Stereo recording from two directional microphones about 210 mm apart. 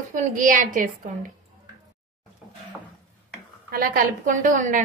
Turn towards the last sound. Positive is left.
turn(degrees=-40)  # may be behind; listen again after turning